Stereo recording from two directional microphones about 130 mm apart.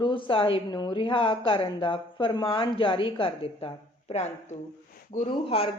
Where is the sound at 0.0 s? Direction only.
40° left (ahead or behind).